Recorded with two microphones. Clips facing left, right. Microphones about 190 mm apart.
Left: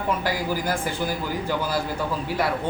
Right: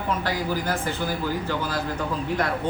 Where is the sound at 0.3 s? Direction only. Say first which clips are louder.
Left 1 dB; 10° left (ahead or behind).